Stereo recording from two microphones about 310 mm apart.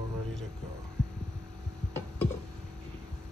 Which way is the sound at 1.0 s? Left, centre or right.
Centre.